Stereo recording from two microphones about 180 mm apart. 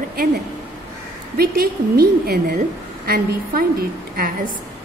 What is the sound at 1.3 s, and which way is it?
A woman's voice, 60° right (ahead or behind).